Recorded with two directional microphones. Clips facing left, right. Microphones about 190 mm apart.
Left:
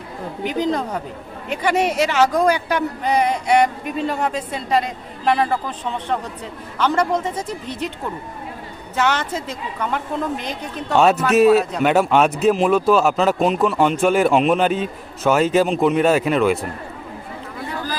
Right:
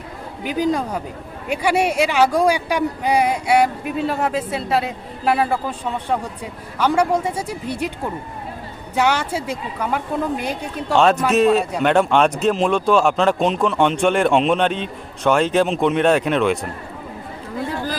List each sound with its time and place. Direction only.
0.4 s speech: 10° right (ahead or behind)
9.0 s speech: 10° right (ahead or behind)
10.9 s speech: 5° left (ahead or behind)